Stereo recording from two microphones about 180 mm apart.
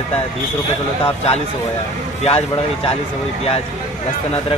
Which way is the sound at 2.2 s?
35° left (ahead or behind).